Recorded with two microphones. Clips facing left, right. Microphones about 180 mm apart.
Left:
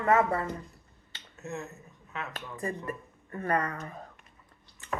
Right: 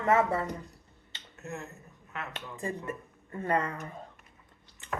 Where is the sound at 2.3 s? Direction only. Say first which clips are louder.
Left 1 dB; 25° right (ahead or behind).